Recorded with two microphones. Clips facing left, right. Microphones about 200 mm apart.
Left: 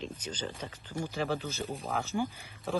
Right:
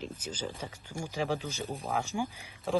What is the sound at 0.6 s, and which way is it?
Speech, 10° right (ahead or behind).